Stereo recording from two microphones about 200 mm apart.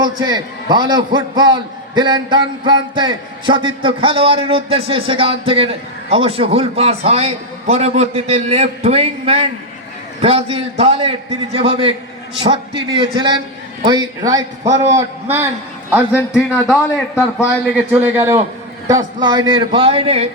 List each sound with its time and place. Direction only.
0.0 s a man's voice: 20° right (ahead or behind); by 16.7 s 5° right (ahead or behind)
18.1 s a man's voice: 15° right (ahead or behind); by 20.2 s 30° right (ahead or behind)